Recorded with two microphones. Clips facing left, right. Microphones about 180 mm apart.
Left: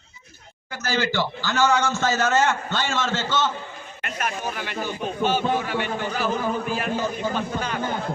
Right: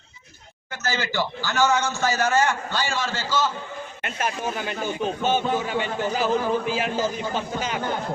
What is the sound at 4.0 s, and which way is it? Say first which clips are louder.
Speech: right 1 dB; 25° right (ahead or behind).